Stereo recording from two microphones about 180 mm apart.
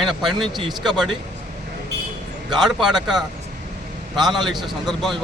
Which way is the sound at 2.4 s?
Centre (ahead or behind).